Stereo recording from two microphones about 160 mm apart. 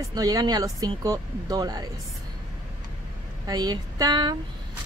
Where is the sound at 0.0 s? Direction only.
25° right (ahead or behind).